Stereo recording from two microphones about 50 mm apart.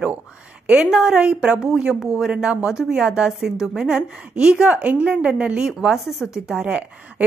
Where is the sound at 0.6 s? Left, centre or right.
Right.